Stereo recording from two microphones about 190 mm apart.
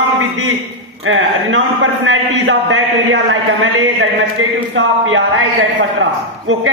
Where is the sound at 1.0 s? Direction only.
90° right.